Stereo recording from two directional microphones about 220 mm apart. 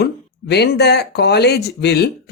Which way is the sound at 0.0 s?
50° left (ahead or behind).